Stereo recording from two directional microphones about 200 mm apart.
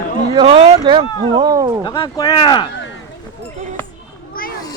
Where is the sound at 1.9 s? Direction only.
20° left (ahead or behind).